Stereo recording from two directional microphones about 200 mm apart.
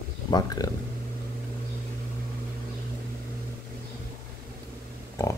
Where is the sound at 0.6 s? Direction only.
20° left (ahead or behind).